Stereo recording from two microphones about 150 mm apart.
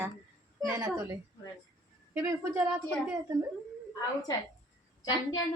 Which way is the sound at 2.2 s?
20° right (ahead or behind).